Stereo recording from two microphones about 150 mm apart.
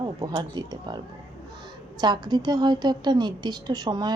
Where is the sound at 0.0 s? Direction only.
25° right (ahead or behind).